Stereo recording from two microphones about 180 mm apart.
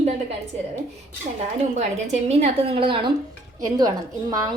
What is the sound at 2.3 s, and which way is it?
A woman's voice, 35° right (ahead or behind).